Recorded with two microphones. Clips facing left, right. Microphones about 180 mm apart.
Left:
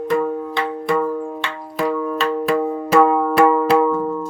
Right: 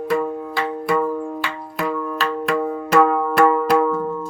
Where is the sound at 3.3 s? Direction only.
5° left (ahead or behind).